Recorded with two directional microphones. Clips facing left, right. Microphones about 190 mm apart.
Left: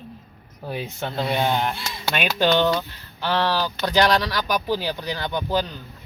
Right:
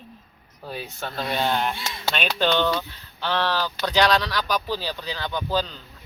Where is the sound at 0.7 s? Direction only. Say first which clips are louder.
Left 4 dB; 20° left (ahead or behind).